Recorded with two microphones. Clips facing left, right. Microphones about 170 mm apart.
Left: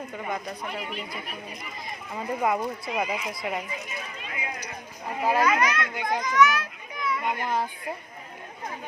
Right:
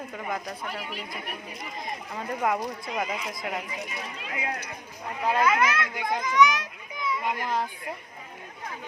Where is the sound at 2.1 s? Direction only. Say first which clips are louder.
Left 2 dB; 5° left (ahead or behind).